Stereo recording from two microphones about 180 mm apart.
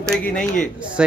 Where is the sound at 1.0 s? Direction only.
5° right (ahead or behind).